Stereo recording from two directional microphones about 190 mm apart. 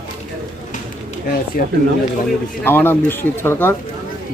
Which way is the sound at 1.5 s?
50° left (ahead or behind).